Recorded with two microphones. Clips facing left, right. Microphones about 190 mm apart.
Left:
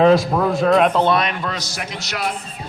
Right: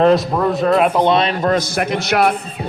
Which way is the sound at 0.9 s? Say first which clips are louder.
Right 3 dB; 20° right (ahead or behind).